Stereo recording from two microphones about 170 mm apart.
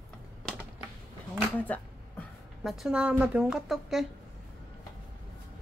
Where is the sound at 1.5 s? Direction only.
10° left (ahead or behind).